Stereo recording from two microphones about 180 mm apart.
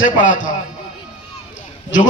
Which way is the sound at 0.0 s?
45° left (ahead or behind).